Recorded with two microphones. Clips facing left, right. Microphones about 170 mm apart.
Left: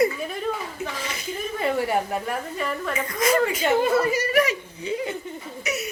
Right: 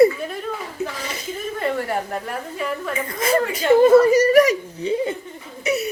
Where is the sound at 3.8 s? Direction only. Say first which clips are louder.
Right 9 dB; 40° right (ahead or behind).